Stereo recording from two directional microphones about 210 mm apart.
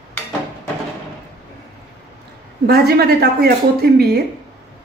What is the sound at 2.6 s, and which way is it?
A woman's voice, 50° right (ahead or behind).